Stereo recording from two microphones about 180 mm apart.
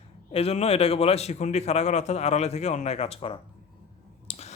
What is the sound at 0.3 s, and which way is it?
Speech, 35° left (ahead or behind).